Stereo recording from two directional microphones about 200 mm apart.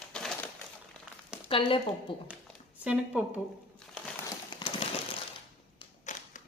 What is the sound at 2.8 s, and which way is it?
Speech, 5° right (ahead or behind).